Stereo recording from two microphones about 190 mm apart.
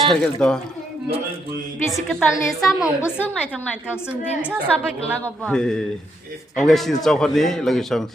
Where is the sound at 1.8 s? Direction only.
Centre (ahead or behind).